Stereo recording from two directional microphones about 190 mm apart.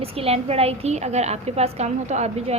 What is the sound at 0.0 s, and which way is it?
A woman's voice, 30° right (ahead or behind).